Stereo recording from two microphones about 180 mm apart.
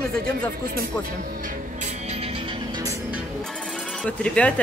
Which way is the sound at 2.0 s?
35° right (ahead or behind).